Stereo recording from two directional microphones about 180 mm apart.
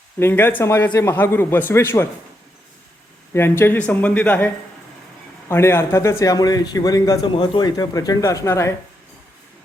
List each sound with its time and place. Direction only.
0.2 s a man's voice: 10° left (ahead or behind)
3.3 s a man's voice: 15° left (ahead or behind)